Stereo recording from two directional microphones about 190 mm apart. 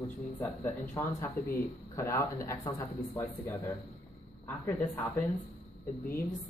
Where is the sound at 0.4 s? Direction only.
10° left (ahead or behind).